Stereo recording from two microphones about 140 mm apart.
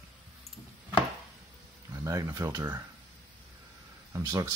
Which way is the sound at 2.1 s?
20° right (ahead or behind).